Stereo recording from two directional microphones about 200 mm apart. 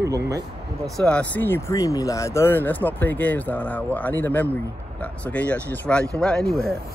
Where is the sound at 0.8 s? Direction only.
5° left (ahead or behind).